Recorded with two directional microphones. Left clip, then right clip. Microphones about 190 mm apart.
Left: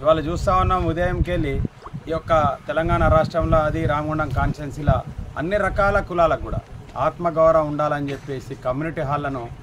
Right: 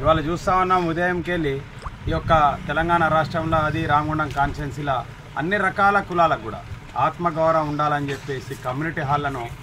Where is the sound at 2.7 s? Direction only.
25° left (ahead or behind).